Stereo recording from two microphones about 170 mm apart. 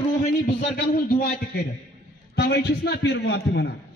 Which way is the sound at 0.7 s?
60° left (ahead or behind).